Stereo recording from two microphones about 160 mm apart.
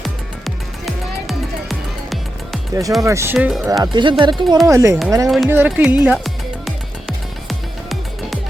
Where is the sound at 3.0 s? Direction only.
15° right (ahead or behind).